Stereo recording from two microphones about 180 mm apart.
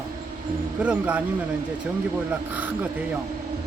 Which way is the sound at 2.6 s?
10° right (ahead or behind).